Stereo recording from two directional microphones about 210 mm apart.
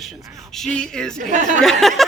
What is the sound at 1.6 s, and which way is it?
Speech, centre (ahead or behind).